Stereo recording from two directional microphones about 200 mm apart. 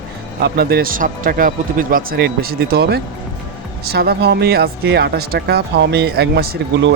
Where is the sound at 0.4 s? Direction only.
50° right (ahead or behind).